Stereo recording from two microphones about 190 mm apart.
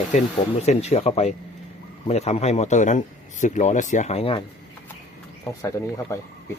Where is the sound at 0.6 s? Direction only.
35° left (ahead or behind).